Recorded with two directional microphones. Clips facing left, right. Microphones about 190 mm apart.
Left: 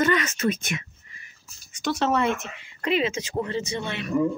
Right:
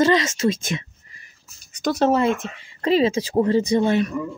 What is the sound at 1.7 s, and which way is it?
Speech, 35° right (ahead or behind).